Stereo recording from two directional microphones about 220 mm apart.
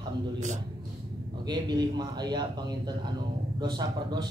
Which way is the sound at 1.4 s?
20° right (ahead or behind).